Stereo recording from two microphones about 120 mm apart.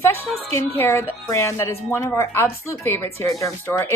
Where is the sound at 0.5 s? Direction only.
20° left (ahead or behind).